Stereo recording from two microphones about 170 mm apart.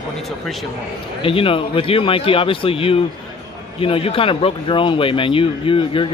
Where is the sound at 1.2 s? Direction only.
30° left (ahead or behind).